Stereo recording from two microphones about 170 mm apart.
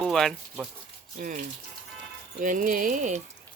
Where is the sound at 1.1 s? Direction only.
50° right (ahead or behind).